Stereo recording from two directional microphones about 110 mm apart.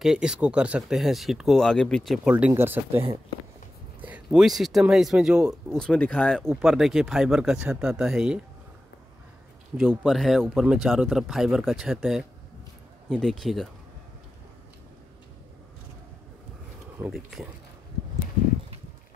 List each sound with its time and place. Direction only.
0.0 s speech: 5° right (ahead or behind)
2.2 s speech: 15° right (ahead or behind)
4.0 s speech: 10° right (ahead or behind)
5.8 s speech: 10° left (ahead or behind)
6.6 s speech: 5° right (ahead or behind)
9.8 s speech: centre (ahead or behind)
17.0 s speech: 25° right (ahead or behind)